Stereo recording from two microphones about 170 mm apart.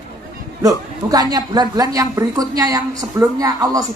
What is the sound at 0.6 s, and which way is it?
A woman's voice, 20° right (ahead or behind).